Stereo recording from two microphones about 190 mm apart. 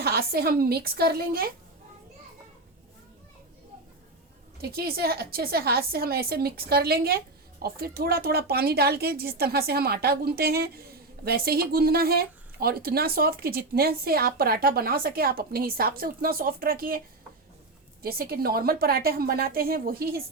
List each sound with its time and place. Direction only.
0.0 s a woman's voice: 55° right (ahead or behind)
4.6 s a woman's voice: 55° right (ahead or behind)
18.0 s a woman's voice: 50° right (ahead or behind)